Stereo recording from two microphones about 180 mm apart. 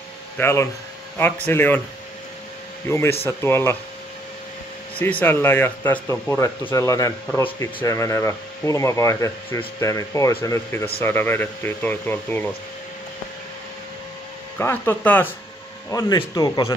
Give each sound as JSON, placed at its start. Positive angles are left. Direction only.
{"t": 0.4, "sound": "speech", "side_deg": 15}
{"t": 2.9, "sound": "speech", "side_deg": 15}
{"t": 5.2, "sound": "speech", "side_deg": 10}
{"t": 14.6, "sound": "speech", "side_deg": 10}